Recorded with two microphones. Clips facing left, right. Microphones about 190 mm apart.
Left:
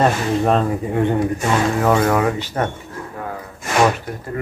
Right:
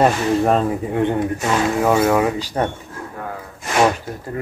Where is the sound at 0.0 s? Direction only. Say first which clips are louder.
Right 1 dB; 5° right (ahead or behind).